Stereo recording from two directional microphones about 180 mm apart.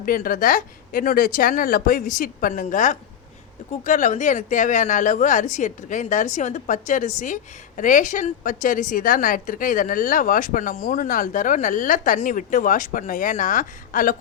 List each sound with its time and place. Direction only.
0.0 s speech: 50° left (ahead or behind)